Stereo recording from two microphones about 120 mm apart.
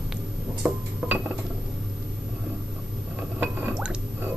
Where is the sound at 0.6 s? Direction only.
5° right (ahead or behind).